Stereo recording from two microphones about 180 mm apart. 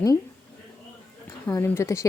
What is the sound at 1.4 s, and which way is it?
Speech, 10° left (ahead or behind).